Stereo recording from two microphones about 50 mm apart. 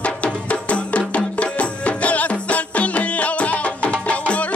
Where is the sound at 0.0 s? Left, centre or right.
Left.